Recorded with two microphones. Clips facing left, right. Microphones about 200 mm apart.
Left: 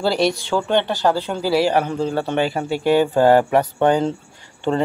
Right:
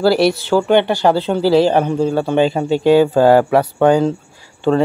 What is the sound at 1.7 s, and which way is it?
A man's voice, 20° right (ahead or behind).